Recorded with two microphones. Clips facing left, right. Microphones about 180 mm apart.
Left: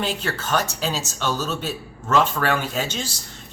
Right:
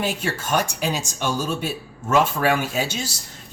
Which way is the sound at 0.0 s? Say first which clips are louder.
Right 1 dB; 10° right (ahead or behind).